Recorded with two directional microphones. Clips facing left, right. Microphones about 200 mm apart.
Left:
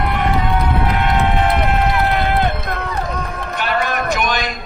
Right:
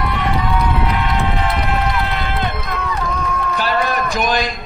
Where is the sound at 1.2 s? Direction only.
55° left (ahead or behind).